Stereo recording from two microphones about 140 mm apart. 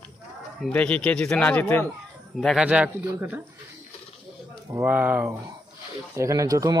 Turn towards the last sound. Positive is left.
turn(degrees=-25)  # may be behind; listen again after turning